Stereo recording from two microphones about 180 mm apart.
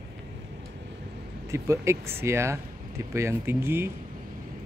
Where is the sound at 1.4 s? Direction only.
15° right (ahead or behind).